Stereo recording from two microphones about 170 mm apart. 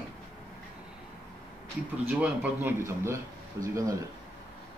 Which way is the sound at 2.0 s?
10° right (ahead or behind).